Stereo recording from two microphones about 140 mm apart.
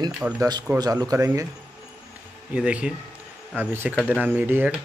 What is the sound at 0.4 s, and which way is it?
Speech, 30° right (ahead or behind).